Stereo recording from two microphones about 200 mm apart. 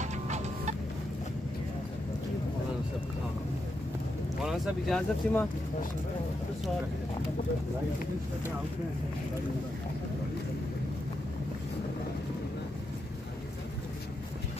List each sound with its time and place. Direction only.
0.0 s music: 35° right (ahead or behind)
4.5 s speech: centre (ahead or behind)